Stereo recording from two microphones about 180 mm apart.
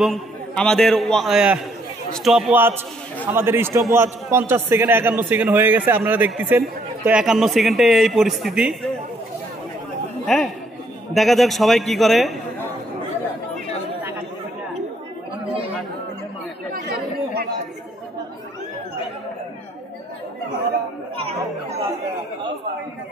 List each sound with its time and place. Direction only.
0.0 s a man's voice: centre (ahead or behind)
10.2 s a man's voice: centre (ahead or behind)
16.7 s chatter: 60° right (ahead or behind)
21.2 s chatter: 35° right (ahead or behind)